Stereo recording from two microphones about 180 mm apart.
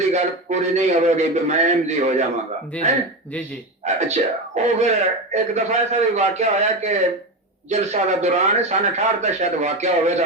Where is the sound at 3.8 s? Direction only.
40° right (ahead or behind).